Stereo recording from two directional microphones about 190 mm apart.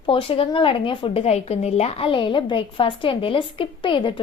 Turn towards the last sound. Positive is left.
turn(degrees=25)  # may be behind; listen again after turning